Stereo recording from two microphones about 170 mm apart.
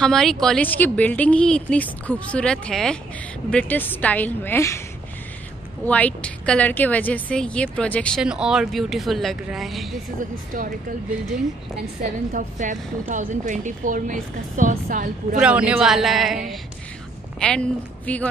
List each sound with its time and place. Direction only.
0.0 s speech: 5° left (ahead or behind)
5.9 s speech: 10° left (ahead or behind)
8.2 s speech: 5° right (ahead or behind)
12.3 s a woman's voice: 50° right (ahead or behind)
15.3 s speech: 5° right (ahead or behind)
17.4 s speech: 5° left (ahead or behind)